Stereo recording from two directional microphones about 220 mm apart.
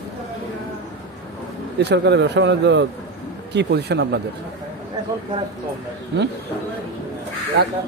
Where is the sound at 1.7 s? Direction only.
50° right (ahead or behind).